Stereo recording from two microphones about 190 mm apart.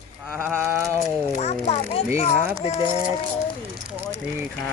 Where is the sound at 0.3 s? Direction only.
10° right (ahead or behind).